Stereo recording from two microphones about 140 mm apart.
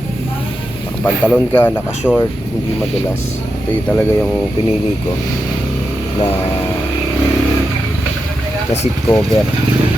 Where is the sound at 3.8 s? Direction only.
10° left (ahead or behind).